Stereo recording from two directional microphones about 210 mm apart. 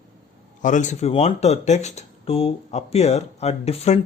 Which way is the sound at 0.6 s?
35° left (ahead or behind).